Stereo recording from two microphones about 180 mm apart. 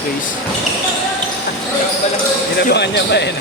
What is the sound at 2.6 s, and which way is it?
Speech, 70° left (ahead or behind).